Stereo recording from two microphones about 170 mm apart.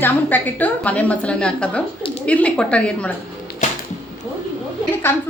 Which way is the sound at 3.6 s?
45° left (ahead or behind).